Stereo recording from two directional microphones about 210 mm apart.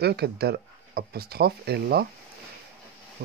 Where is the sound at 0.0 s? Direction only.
50° right (ahead or behind).